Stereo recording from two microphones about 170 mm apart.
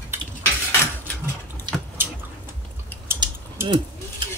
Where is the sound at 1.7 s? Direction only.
25° right (ahead or behind).